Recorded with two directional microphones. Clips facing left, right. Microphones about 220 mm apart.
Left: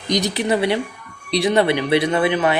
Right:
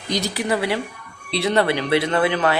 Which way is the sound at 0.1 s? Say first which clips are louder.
Left 3 dB; 20° left (ahead or behind).